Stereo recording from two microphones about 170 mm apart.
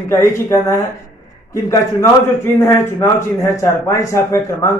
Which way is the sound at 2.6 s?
15° left (ahead or behind).